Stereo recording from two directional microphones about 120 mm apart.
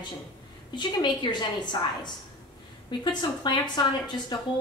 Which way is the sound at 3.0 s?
40° left (ahead or behind).